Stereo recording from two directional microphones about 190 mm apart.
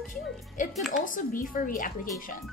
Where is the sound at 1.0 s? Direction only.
45° left (ahead or behind).